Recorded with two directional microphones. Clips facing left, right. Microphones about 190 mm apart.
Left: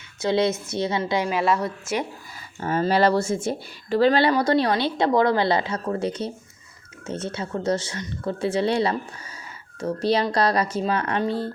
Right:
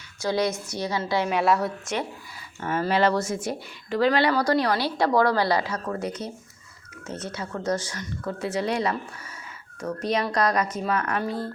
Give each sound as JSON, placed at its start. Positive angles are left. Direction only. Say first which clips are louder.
{"t": 0.2, "sound": "speech", "louder": "left 3 dB", "side_deg": 25}
{"t": 1.3, "sound": "a woman's voice", "louder": "even", "side_deg": 0}
{"t": 2.6, "sound": "speech", "louder": "left 3 dB", "side_deg": 30}